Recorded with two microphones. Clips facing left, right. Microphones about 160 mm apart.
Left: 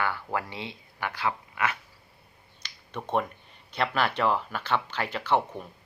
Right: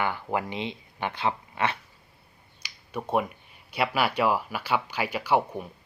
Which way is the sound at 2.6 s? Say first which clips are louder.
Right 3 dB; 10° right (ahead or behind).